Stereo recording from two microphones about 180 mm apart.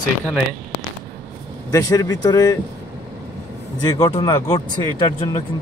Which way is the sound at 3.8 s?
20° left (ahead or behind).